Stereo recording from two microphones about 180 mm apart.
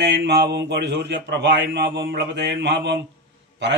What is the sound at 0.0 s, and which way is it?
A man's voice, 70° right (ahead or behind).